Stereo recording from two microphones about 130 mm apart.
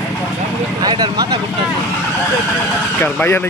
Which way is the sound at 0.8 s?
35° right (ahead or behind).